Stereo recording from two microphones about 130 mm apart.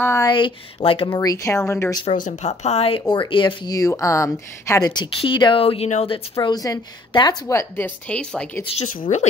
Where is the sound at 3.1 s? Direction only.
40° left (ahead or behind).